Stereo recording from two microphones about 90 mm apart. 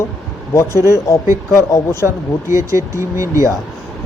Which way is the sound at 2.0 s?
35° right (ahead or behind).